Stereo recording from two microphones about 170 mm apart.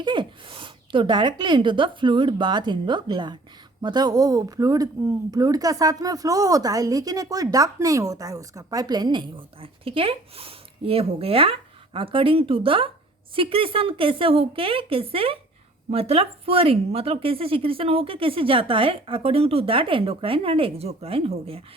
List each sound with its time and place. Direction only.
0.0 s a woman's voice: 25° right (ahead or behind)